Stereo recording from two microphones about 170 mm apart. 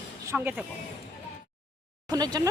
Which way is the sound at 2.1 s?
25° right (ahead or behind).